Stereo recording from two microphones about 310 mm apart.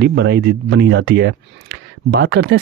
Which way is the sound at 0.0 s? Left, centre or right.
Right.